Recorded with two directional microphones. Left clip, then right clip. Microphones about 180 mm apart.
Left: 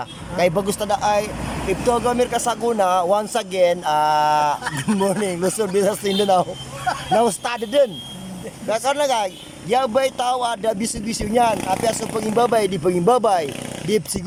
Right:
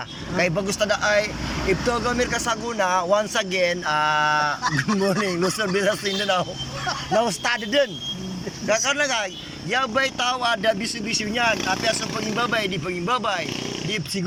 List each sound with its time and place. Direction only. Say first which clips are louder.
0.3 s speech: left 3 dB; 20° left (ahead or behind)
4.6 s speech: left 1 dB; centre (ahead or behind)
5.7 s speech: left 3 dB; 25° left (ahead or behind)